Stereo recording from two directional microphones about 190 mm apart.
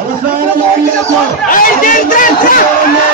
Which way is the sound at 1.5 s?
45° left (ahead or behind).